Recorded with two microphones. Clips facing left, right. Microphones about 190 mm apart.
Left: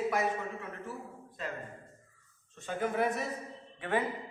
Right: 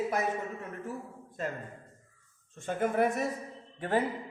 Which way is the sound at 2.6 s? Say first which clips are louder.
Right 3 dB; 50° right (ahead or behind).